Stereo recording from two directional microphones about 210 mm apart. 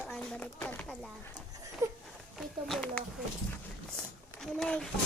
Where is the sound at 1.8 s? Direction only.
15° right (ahead or behind).